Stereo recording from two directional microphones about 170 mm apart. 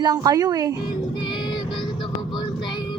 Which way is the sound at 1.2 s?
25° left (ahead or behind).